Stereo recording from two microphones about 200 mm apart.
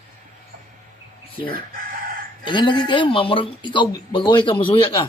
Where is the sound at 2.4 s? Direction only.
25° left (ahead or behind).